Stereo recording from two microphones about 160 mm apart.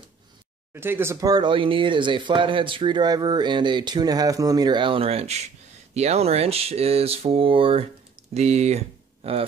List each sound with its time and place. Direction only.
0.7 s speech: 15° right (ahead or behind); by 9.5 s 40° right (ahead or behind)